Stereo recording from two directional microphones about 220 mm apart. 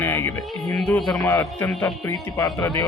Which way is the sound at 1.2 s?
15° left (ahead or behind).